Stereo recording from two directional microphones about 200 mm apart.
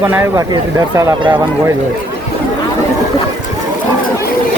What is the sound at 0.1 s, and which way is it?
Speech, 10° right (ahead or behind).